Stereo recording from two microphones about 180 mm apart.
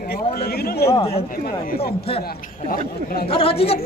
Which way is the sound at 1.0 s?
35° left (ahead or behind).